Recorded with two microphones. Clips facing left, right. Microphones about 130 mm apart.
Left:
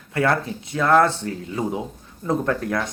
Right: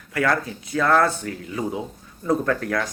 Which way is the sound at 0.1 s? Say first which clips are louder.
Left 1 dB; 25° left (ahead or behind).